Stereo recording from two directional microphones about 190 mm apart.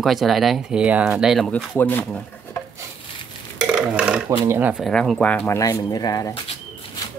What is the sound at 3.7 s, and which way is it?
Speech, 5° right (ahead or behind).